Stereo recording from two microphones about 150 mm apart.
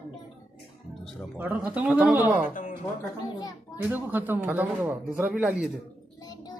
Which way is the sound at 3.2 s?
25° left (ahead or behind).